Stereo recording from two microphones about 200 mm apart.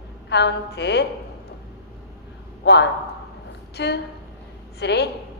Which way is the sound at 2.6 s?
60° left (ahead or behind).